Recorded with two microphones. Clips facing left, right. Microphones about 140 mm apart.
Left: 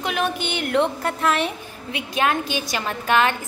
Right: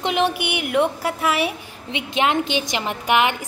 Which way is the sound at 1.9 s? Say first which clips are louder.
Right 1 dB; 20° right (ahead or behind).